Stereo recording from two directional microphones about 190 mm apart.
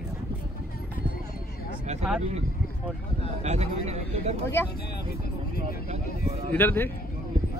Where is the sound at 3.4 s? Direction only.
35° right (ahead or behind).